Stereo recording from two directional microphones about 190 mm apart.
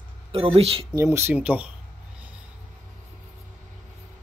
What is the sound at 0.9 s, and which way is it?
Speech, 15° right (ahead or behind).